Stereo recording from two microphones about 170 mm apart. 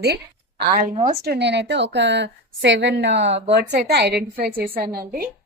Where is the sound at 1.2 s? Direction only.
75° right (ahead or behind).